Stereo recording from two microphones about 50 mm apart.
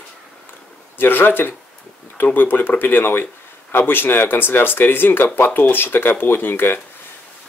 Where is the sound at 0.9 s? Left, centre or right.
Left.